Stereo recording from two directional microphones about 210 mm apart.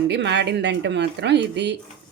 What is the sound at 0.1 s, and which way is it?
A woman's voice, 55° right (ahead or behind).